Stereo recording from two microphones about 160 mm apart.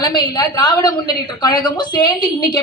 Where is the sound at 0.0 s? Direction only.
25° left (ahead or behind).